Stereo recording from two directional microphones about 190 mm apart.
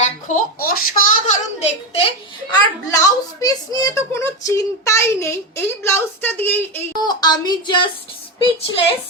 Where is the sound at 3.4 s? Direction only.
20° left (ahead or behind).